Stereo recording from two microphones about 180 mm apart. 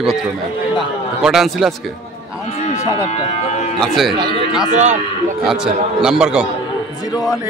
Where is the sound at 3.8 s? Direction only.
Centre (ahead or behind).